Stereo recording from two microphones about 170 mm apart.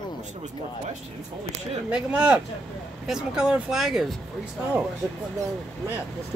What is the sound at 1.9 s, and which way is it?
Speech, 5° right (ahead or behind).